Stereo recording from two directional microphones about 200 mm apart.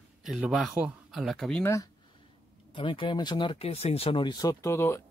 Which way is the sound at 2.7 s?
25° left (ahead or behind).